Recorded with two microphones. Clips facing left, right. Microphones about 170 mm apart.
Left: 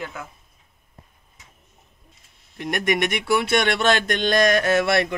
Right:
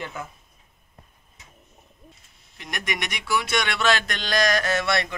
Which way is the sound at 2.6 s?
55° left (ahead or behind).